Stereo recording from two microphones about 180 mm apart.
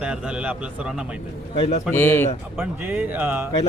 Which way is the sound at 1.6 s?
40° left (ahead or behind).